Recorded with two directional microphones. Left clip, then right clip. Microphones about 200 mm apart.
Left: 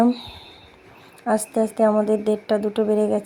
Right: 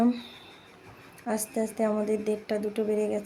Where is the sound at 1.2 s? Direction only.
20° left (ahead or behind).